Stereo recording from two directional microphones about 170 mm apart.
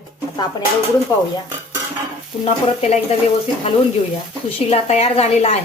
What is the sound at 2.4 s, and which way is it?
Speech, 40° left (ahead or behind).